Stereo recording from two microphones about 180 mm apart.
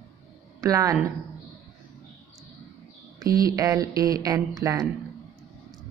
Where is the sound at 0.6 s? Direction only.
20° right (ahead or behind).